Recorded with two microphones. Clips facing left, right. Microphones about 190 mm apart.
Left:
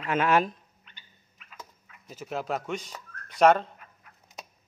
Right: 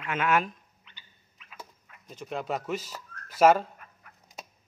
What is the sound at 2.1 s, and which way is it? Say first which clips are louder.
Speech: left 1 dB; 5° left (ahead or behind).